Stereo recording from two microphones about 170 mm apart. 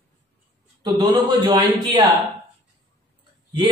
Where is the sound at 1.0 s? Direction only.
30° right (ahead or behind).